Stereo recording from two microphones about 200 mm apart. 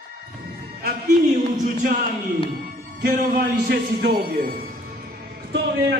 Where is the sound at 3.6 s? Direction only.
50° right (ahead or behind).